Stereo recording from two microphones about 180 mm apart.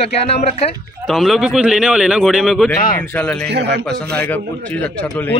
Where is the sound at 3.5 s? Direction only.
70° right (ahead or behind).